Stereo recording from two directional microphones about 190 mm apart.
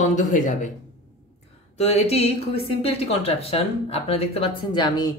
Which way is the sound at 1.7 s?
35° left (ahead or behind).